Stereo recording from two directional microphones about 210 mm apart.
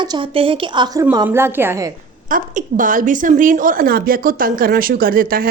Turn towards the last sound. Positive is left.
turn(degrees=-45)  # may be behind; listen again after turning